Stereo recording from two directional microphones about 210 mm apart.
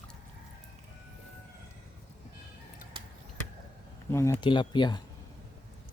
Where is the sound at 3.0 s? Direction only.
20° right (ahead or behind).